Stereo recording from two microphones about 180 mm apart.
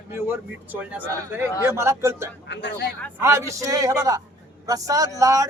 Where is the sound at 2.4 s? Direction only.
75° left (ahead or behind).